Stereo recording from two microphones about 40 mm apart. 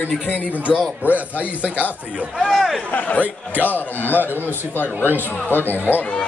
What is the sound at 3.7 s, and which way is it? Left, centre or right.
A man's voice, left.